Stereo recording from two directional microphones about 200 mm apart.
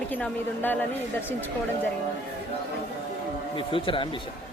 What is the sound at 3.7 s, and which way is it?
Speech, 25° left (ahead or behind).